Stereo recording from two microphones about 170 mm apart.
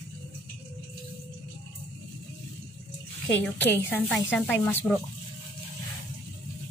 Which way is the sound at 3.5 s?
10° left (ahead or behind).